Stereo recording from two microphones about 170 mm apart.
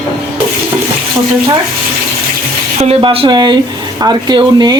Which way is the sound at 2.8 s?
35° right (ahead or behind).